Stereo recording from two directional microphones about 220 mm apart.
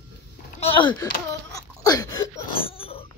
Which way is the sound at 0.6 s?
25° left (ahead or behind).